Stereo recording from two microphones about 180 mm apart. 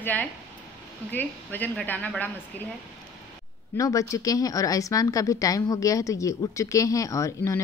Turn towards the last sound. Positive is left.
turn(degrees=15)  # may be behind; listen again after turning